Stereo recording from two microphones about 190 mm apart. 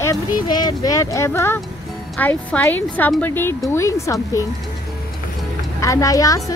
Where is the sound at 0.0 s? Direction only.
20° left (ahead or behind).